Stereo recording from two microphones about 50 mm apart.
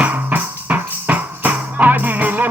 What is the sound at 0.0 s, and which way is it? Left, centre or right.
Music, right.